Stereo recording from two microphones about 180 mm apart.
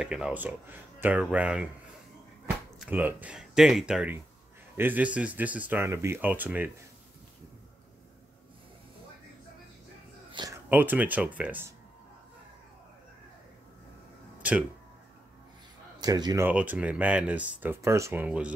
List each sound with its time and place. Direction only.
0.0 s speech: 5° right (ahead or behind)
2.8 s speech: 10° right (ahead or behind)
10.3 s a sound: 20° right (ahead or behind)
10.7 s speech: 10° right (ahead or behind)
16.0 s speech: 20° right (ahead or behind)